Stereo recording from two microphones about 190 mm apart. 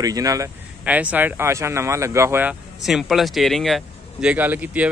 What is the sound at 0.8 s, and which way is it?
Speech, 5° right (ahead or behind).